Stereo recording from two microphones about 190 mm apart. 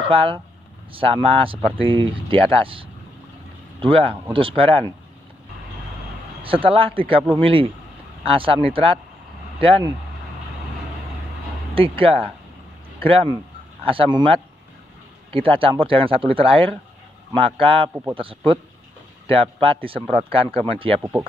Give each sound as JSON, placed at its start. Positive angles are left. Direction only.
{"t": 0.1, "sound": "speech", "side_deg": -30}
{"t": 6.4, "sound": "speech", "side_deg": -30}
{"t": 11.7, "sound": "speech", "side_deg": -30}
{"t": 19.6, "sound": "speech", "side_deg": -30}